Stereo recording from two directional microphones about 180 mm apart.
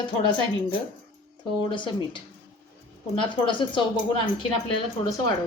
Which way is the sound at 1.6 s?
25° left (ahead or behind).